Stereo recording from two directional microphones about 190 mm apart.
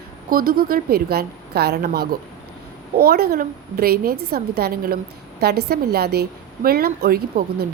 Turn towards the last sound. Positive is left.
turn(degrees=-55)  # may be behind; listen again after turning